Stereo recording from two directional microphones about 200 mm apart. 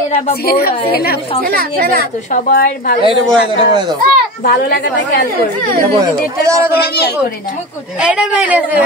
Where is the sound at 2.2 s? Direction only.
40° left (ahead or behind).